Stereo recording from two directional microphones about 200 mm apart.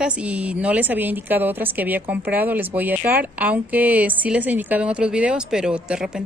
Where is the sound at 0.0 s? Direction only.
5° right (ahead or behind).